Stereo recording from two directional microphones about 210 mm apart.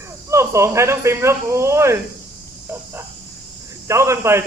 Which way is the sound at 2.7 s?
10° right (ahead or behind).